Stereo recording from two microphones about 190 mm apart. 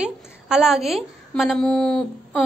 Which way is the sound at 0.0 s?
5° right (ahead or behind).